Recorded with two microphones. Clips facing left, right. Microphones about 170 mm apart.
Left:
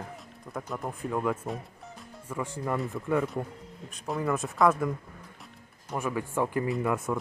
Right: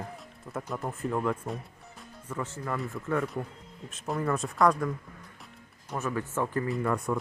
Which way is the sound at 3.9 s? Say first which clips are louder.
Even; centre (ahead or behind).